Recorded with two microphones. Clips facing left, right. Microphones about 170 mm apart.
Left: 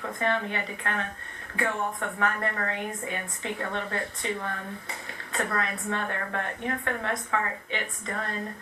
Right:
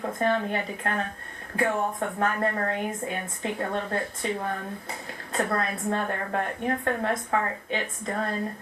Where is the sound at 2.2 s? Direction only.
35° right (ahead or behind).